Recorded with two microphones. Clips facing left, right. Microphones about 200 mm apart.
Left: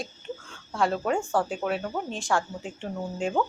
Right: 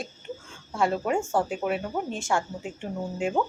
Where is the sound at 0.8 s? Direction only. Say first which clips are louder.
Even; 10° right (ahead or behind).